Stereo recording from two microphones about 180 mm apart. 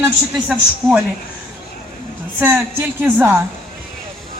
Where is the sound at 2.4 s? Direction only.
15° right (ahead or behind).